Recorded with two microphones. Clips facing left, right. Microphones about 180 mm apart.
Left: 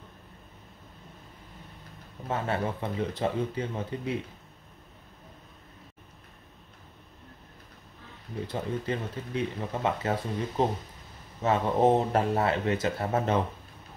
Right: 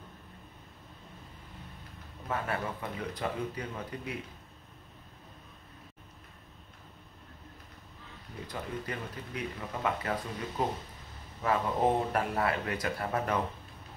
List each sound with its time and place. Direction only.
2.2 s speech: 25° left (ahead or behind)
8.5 s speech: 25° left (ahead or behind)